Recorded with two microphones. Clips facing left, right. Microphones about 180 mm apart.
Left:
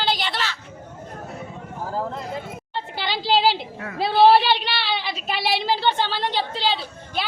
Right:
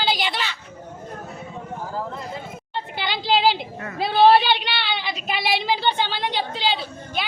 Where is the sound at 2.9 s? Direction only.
Centre (ahead or behind).